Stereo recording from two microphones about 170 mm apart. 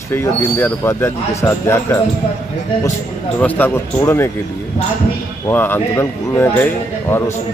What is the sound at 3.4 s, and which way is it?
Speech, 10° left (ahead or behind).